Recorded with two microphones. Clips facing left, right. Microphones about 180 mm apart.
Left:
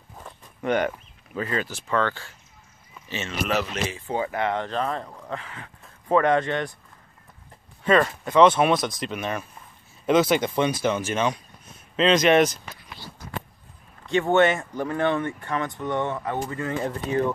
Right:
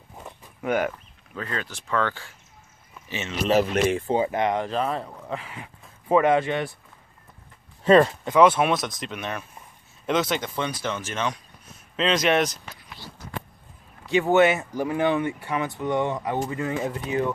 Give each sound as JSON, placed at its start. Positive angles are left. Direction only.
{"t": 0.2, "sound": "a sound", "side_deg": -5}
{"t": 0.9, "sound": "speech", "side_deg": 5}
{"t": 2.0, "sound": "speech", "side_deg": -10}
{"t": 3.8, "sound": "speech", "side_deg": -60}
{"t": 4.1, "sound": "speech", "side_deg": -20}
{"t": 7.8, "sound": "speech", "side_deg": -35}
{"t": 8.3, "sound": "speech", "side_deg": -5}
{"t": 12.0, "sound": "speech", "side_deg": 0}
{"t": 14.0, "sound": "speech", "side_deg": -5}